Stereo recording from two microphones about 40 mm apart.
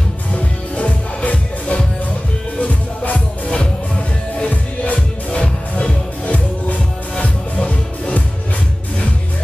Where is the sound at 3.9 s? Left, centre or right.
Left.